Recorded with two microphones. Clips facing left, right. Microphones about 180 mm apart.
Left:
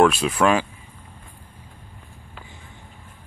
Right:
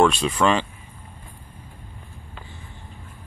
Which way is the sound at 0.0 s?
5° left (ahead or behind).